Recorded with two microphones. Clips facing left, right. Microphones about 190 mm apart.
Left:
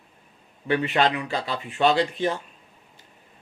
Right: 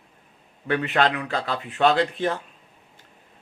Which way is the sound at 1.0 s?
55° right (ahead or behind).